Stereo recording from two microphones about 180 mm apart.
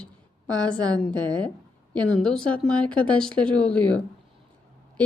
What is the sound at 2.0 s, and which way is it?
Speech, 5° left (ahead or behind).